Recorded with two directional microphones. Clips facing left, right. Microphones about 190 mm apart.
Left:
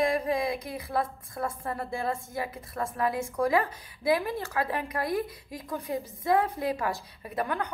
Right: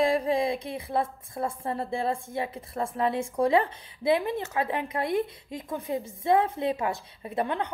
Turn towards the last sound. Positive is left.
turn(degrees=-25)  # may be behind; listen again after turning